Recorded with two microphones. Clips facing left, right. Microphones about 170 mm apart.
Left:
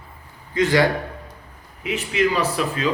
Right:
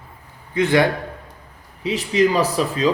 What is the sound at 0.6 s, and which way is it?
Speech, 20° right (ahead or behind).